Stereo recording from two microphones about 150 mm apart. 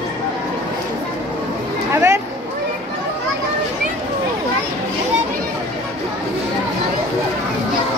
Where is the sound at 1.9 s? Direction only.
20° right (ahead or behind).